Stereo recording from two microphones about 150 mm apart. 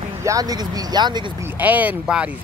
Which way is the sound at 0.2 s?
25° right (ahead or behind).